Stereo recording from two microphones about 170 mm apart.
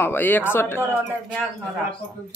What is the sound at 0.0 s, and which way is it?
Speech, 10° left (ahead or behind).